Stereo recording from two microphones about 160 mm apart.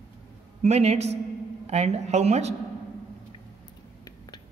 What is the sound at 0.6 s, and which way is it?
A man's voice, 40° right (ahead or behind).